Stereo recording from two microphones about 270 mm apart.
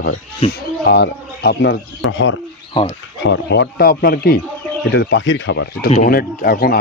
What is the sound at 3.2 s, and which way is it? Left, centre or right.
Speech, left.